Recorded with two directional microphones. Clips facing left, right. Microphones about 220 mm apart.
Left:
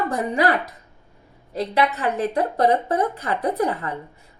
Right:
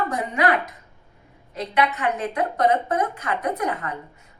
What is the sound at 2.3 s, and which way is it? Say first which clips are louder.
A woman's voice: left 1 dB; 30° left (ahead or behind).